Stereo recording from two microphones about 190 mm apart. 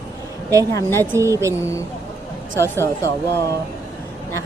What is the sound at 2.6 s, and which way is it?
Speech, 10° left (ahead or behind).